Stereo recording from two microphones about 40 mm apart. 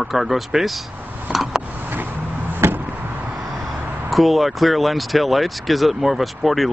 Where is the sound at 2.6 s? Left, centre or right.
Right.